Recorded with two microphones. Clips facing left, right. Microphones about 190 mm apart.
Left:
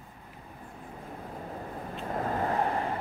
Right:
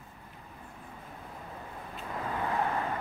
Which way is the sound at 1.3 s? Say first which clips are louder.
Left 6 dB; 35° left (ahead or behind).